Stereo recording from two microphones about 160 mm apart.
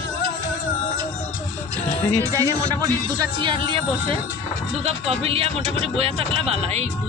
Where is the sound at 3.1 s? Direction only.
30° right (ahead or behind).